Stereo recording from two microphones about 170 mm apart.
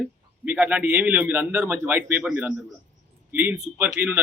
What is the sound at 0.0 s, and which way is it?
A man's voice, 10° right (ahead or behind).